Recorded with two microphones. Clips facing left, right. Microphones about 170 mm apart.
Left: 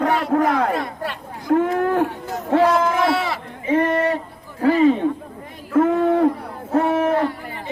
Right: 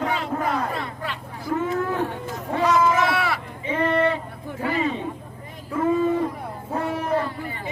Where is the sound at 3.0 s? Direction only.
25° left (ahead or behind).